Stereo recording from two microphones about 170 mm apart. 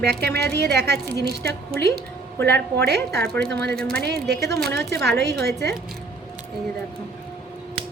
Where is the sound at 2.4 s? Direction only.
15° left (ahead or behind).